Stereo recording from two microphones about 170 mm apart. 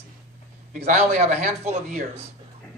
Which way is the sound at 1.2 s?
40° right (ahead or behind).